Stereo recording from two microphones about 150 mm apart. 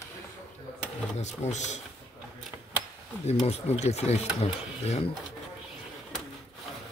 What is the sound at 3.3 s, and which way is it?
Speech, 45° left (ahead or behind).